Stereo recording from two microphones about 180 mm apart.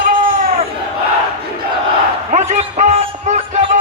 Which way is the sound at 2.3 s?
40° right (ahead or behind).